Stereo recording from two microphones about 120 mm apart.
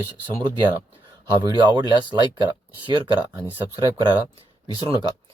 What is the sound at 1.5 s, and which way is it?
Speech, 35° right (ahead or behind).